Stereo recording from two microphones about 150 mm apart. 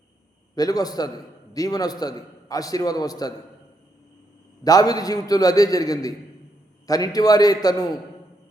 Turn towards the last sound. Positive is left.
turn(degrees=25)  # may be behind; listen again after turning